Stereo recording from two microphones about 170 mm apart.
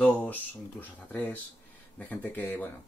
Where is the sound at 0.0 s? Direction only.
10° left (ahead or behind).